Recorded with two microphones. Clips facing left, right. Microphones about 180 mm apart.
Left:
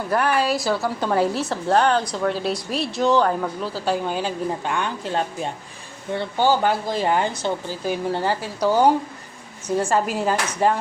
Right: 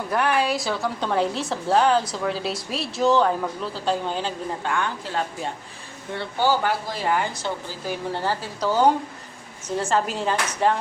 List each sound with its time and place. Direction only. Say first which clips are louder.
0.1 s a woman's voice: left 2 dB; centre (ahead or behind)